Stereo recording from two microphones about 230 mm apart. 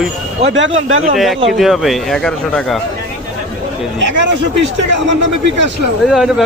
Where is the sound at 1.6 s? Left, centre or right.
Centre.